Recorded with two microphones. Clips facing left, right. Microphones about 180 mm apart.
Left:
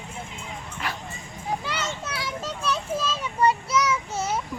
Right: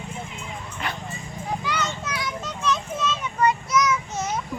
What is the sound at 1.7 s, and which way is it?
Children playing, 5° left (ahead or behind).